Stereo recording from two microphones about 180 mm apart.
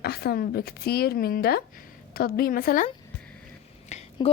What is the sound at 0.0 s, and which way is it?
Speech, 60° left (ahead or behind).